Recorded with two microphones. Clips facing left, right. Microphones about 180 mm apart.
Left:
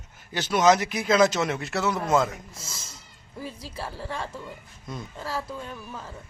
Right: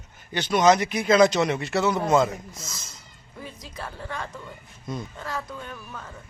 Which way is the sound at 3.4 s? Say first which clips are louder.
Left 2 dB; 35° left (ahead or behind).